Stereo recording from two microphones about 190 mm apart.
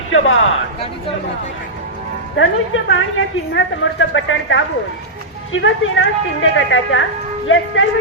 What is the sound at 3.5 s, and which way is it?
Speech, 80° left.